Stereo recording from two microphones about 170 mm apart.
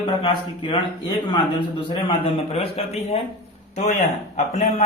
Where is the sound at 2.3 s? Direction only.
35° left (ahead or behind).